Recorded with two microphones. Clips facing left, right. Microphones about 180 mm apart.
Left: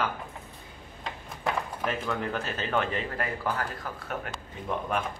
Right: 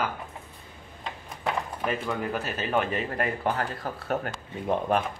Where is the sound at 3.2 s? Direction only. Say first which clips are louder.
Right 5 dB; 25° right (ahead or behind).